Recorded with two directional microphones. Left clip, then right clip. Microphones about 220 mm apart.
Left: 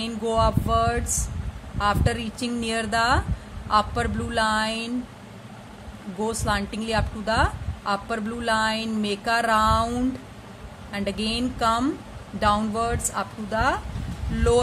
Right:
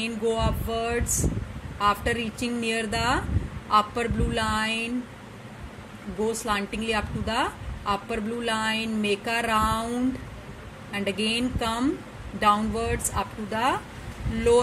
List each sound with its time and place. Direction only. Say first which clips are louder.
0.0 s a sound: left 3 dB; 20° left (ahead or behind)
1.8 s a woman's voice: even; 20° left (ahead or behind)
6.4 s a woman's voice: left 1 dB; 20° left (ahead or behind)
10.9 s a woman's voice: right 1 dB; 20° left (ahead or behind)